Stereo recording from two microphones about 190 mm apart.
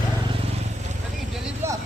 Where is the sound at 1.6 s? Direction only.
15° right (ahead or behind).